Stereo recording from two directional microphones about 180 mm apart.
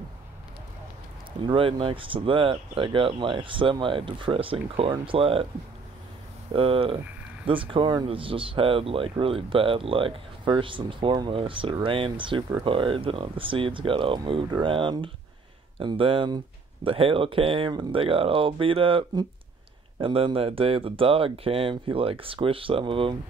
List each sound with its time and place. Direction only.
1.4 s speech: 30° right (ahead or behind)
6.5 s speech: 30° right (ahead or behind)